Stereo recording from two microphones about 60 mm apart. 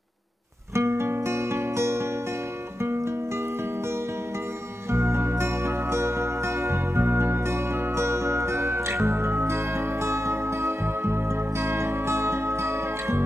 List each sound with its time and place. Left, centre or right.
0.7 s music: right
4.9 s music: right